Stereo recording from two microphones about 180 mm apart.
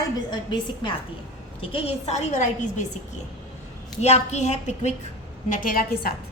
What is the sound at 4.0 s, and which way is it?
Speech, 40° left (ahead or behind).